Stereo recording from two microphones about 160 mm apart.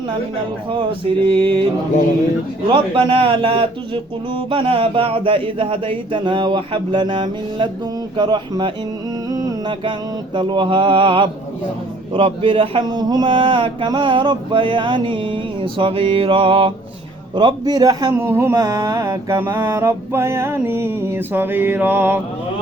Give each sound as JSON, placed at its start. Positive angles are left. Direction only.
{"t": 0.7, "sound": "speech", "side_deg": -30}
{"t": 2.7, "sound": "a man's voice", "side_deg": -30}
{"t": 9.3, "sound": "a sound", "side_deg": -20}
{"t": 10.3, "sound": "a man's voice", "side_deg": -30}
{"t": 18.2, "sound": "mantra", "side_deg": -15}
{"t": 18.5, "sound": "mantra", "side_deg": -25}